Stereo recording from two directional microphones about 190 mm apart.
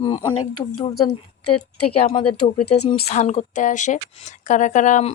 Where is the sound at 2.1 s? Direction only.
30° left (ahead or behind).